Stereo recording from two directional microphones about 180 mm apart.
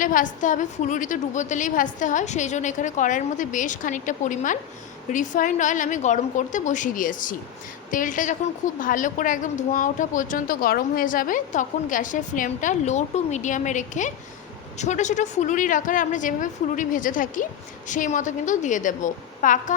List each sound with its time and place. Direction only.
0.0 s a woman's voice: 45° left (ahead or behind)